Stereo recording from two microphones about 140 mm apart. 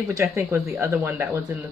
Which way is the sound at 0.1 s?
20° right (ahead or behind).